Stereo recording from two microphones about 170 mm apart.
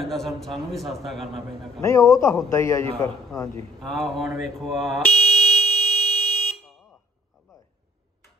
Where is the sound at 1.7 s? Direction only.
20° left (ahead or behind).